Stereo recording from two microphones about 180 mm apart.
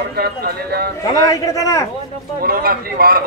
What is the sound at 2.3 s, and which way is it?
Speech, 55° right (ahead or behind).